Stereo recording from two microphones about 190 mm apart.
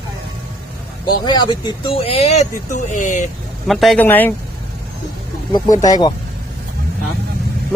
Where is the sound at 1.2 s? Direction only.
25° left (ahead or behind); by 3.2 s 40° left (ahead or behind).